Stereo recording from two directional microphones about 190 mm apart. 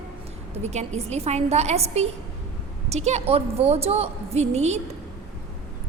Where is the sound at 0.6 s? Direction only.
35° right (ahead or behind).